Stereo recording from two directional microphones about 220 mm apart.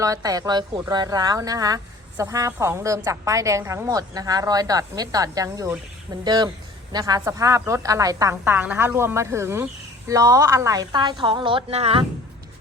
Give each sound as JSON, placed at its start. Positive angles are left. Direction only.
{"t": 0.0, "sound": "a woman's voice", "side_deg": -15}